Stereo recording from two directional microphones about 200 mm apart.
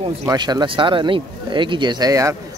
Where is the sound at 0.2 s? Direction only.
20° right (ahead or behind).